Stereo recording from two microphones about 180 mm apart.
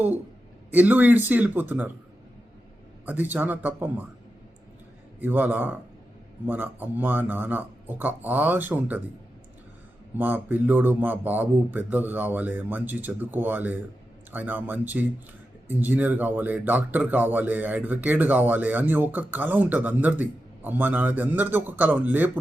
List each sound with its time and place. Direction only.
0.7 s speech: 10° right (ahead or behind)
3.1 s speech: 10° right (ahead or behind)
5.2 s speech: 10° right (ahead or behind)
10.2 s speech: 10° right (ahead or behind)